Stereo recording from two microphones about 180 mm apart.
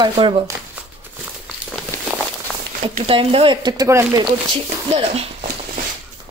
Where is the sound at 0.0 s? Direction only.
30° right (ahead or behind).